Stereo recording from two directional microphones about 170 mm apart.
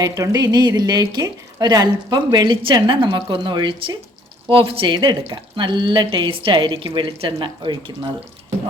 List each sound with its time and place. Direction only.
0.0 s speech: 20° right (ahead or behind)